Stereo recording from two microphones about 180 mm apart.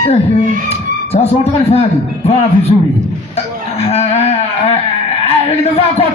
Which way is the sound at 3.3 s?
35° left (ahead or behind).